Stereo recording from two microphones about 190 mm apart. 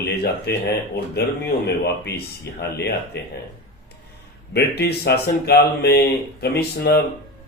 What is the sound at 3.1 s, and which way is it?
Speech, 60° left (ahead or behind).